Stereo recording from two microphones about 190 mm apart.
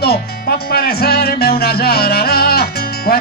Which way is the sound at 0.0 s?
55° left (ahead or behind).